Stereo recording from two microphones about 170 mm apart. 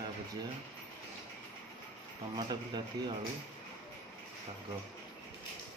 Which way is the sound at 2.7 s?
25° right (ahead or behind).